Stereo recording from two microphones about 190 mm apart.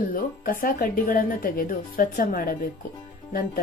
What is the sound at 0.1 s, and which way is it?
Speech, 50° left (ahead or behind).